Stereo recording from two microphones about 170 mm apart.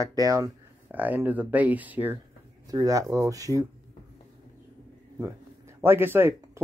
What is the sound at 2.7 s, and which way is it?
Speech, 20° right (ahead or behind).